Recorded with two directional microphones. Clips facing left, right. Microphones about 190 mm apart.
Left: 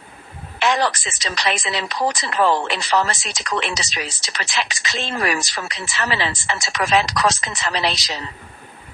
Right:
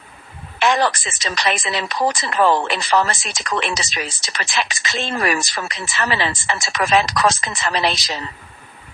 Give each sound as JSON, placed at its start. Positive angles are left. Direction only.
{"t": 0.6, "sound": "speech", "side_deg": -50}